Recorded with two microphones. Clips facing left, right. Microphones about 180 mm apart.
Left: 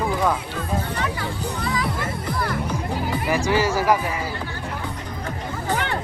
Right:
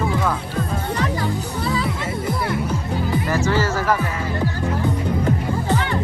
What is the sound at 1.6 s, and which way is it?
Music, 30° right (ahead or behind).